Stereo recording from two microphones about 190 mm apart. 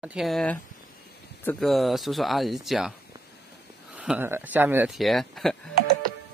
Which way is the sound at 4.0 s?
10° right (ahead or behind).